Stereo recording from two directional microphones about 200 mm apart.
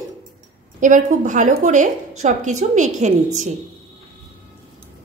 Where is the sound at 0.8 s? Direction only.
40° right (ahead or behind).